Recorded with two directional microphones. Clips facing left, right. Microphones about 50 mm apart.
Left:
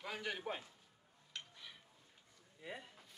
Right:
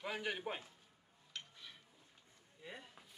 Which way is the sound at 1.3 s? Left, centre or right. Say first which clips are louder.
Even; centre.